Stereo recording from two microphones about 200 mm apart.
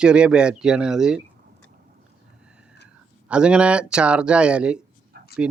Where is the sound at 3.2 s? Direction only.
5° right (ahead or behind).